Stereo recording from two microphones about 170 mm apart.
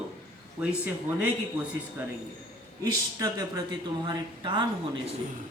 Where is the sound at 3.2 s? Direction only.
20° right (ahead or behind).